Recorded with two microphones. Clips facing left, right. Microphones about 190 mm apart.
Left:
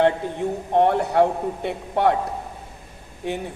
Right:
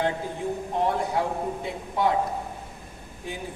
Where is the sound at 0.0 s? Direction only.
65° left (ahead or behind).